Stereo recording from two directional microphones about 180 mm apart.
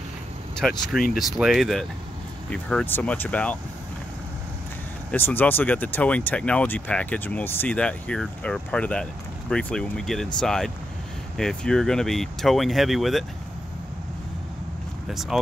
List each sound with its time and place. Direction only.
0.6 s speech: centre (ahead or behind)
5.1 s speech: 10° left (ahead or behind)
15.0 s speech: centre (ahead or behind)